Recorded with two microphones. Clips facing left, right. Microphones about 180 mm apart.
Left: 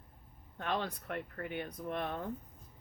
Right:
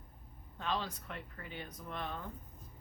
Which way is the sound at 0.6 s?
55° left (ahead or behind).